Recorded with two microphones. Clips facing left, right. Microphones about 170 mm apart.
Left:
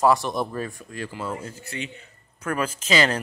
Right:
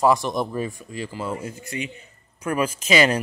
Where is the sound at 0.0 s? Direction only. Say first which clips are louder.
Right 1 dB; 15° right (ahead or behind).